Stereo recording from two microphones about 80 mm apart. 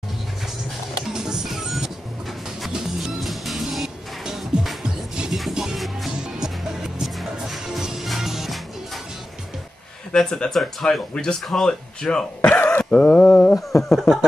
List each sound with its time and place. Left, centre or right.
1.0 s music: centre
10.1 s speech: centre
12.4 s cough: centre
13.6 s a sound: centre